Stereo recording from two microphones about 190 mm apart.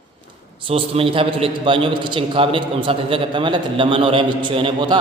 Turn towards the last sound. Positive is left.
turn(degrees=-25)  # may be behind; listen again after turning